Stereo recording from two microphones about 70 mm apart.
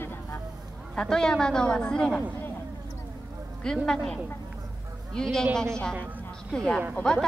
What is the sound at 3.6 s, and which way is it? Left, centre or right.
Speech, centre.